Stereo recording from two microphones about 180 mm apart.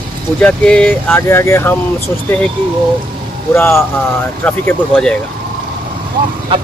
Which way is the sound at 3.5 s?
10° left (ahead or behind).